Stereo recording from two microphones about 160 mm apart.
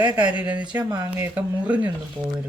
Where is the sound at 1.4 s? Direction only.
10° right (ahead or behind).